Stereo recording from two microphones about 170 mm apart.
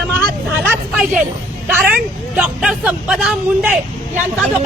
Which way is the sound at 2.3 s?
10° right (ahead or behind).